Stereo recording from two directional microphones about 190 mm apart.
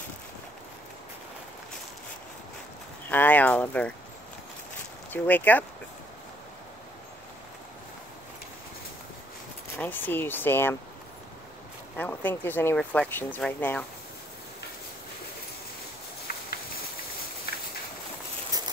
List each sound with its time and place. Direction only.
3.1 s speech: 10° left (ahead or behind)
5.1 s speech: 10° left (ahead or behind)
9.8 s speech: 10° left (ahead or behind)
12.0 s speech: 10° left (ahead or behind)
16.3 s a sound: 50° left (ahead or behind)